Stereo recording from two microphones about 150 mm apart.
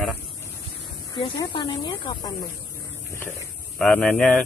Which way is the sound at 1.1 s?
35° left (ahead or behind).